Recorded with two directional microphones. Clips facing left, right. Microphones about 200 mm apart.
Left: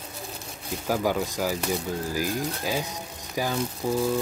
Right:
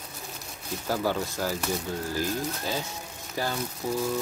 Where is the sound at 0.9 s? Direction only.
15° left (ahead or behind).